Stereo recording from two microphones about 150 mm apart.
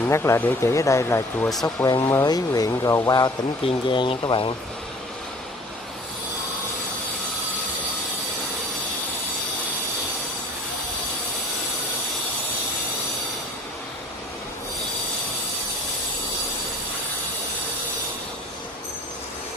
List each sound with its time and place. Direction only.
0.0 s speech: 15° left (ahead or behind); by 4.6 s 35° left (ahead or behind)